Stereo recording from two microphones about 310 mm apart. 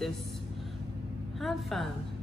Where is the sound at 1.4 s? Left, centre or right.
Centre.